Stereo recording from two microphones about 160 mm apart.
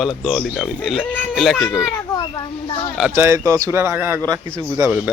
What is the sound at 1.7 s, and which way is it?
Children playing, 20° left (ahead or behind).